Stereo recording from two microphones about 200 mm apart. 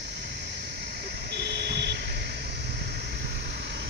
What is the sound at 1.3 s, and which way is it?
Vehicle, 55° right (ahead or behind).